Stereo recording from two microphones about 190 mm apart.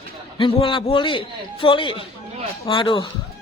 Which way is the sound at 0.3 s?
25° left (ahead or behind).